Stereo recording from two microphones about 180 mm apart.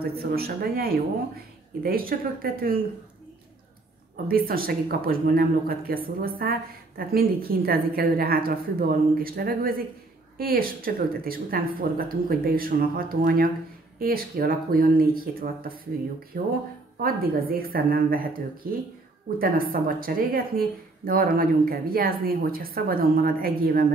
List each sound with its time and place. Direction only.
0.0 s speech: 60° right (ahead or behind)
4.3 s a woman's voice: 55° right (ahead or behind)